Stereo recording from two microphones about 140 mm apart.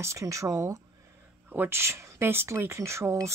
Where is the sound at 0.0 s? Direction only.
20° right (ahead or behind).